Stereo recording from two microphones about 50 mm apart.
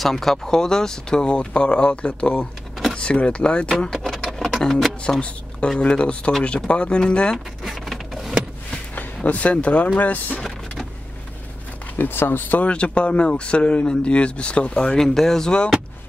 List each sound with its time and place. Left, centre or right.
0.0 s speech: centre
3.9 s keys jangling: centre
5.8 s speech: left
7.6 s printer: centre
8.9 s speech: left
12.0 s speech: left
12.5 s speech: left
15.0 s speech: centre